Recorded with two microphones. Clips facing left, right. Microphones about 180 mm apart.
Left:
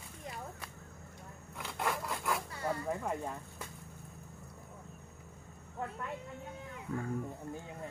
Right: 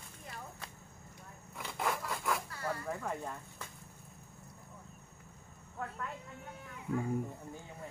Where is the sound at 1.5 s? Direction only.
Centre (ahead or behind).